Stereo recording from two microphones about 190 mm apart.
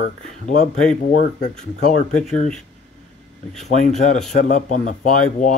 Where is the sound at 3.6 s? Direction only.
40° left (ahead or behind).